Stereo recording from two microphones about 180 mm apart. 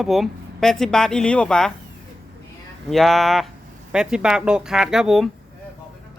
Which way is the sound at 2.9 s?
Centre (ahead or behind).